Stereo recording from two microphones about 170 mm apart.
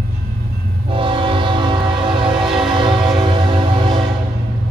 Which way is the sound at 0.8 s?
30° right (ahead or behind).